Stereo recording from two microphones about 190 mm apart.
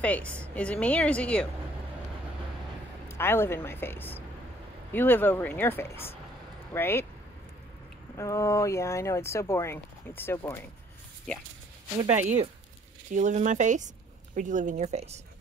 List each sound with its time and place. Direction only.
0.0 s speech: 10° left (ahead or behind)
3.1 s speech: 10° left (ahead or behind)
8.2 s speech: 15° left (ahead or behind)
13.1 s speech: 40° right (ahead or behind)